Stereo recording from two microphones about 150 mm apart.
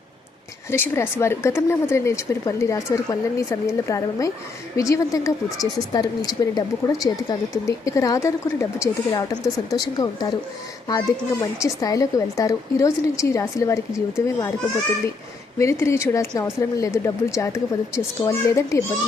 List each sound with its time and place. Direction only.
0.7 s speech: 15° left (ahead or behind)
15.5 s speech: 20° left (ahead or behind)